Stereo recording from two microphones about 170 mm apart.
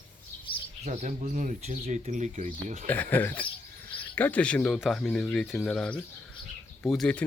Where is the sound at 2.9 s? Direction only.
10° left (ahead or behind).